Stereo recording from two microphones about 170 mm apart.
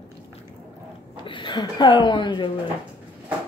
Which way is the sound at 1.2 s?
30° left (ahead or behind).